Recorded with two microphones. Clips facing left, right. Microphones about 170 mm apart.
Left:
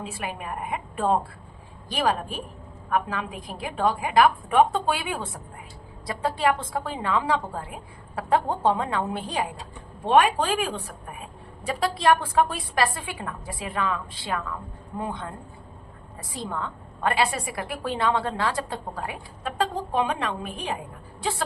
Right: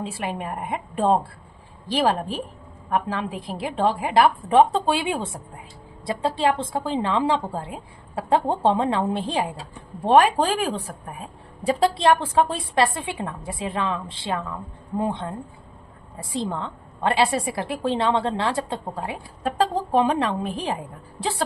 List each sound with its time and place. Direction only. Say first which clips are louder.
0.0 s a woman's voice: right 4 dB; 30° right (ahead or behind)
19.4 s a woman's voice: right 5 dB; 35° right (ahead or behind)